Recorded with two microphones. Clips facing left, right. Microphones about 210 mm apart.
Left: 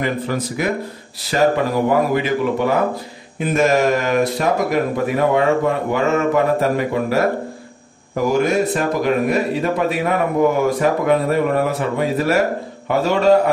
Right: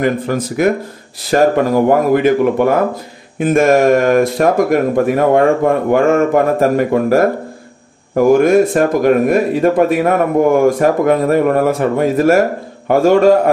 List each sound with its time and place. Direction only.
0.6 s speech: 50° right (ahead or behind)